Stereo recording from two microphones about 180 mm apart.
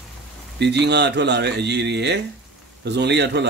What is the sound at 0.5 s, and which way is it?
A man's voice, 70° right (ahead or behind).